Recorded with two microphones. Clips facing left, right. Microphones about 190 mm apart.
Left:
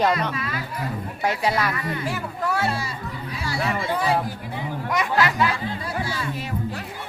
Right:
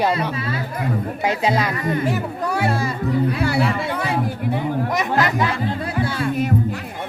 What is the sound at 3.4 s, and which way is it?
Music, 60° right (ahead or behind).